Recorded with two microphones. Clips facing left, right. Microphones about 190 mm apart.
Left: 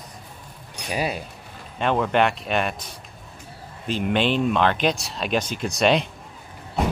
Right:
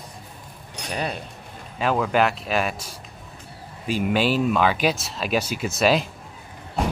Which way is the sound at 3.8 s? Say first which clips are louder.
Right 1 dB; 5° right (ahead or behind).